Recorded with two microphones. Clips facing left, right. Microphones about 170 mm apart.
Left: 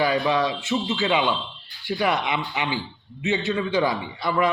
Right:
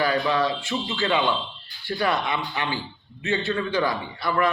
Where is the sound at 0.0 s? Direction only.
15° left (ahead or behind).